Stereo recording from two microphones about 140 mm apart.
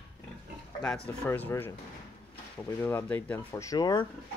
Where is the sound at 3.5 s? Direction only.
25° left (ahead or behind).